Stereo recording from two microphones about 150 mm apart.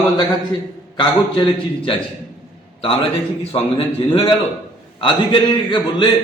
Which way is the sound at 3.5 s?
40° left (ahead or behind).